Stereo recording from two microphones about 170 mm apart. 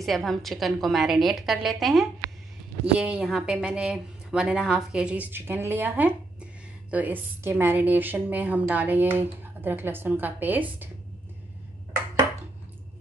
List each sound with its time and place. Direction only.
0.0 s a woman's voice: centre (ahead or behind)